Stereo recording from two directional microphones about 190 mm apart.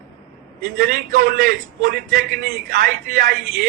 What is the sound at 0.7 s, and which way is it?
Speech, 50° right (ahead or behind).